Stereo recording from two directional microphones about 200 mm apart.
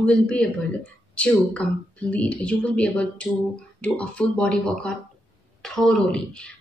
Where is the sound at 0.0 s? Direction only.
5° left (ahead or behind).